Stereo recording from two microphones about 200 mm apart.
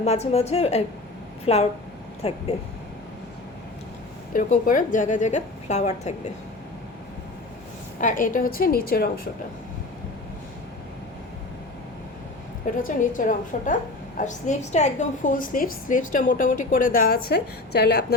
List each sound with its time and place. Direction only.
0.0 s a woman's voice: 30° left (ahead or behind)
4.4 s a woman's voice: 40° left (ahead or behind)
8.0 s a woman's voice: 40° left (ahead or behind)
12.7 s a woman's voice: 40° left (ahead or behind)
17.7 s a woman's voice: 55° left (ahead or behind)